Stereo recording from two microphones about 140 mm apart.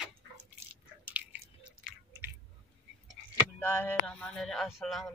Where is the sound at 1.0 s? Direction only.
10° right (ahead or behind).